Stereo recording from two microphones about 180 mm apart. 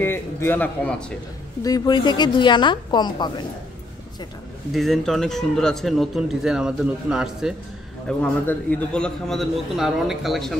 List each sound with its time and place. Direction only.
0.0 s a man's voice: 10° left (ahead or behind)
1.6 s a woman's voice: 25° left (ahead or behind)
4.7 s speech: centre (ahead or behind)
8.2 s speech: 10° left (ahead or behind)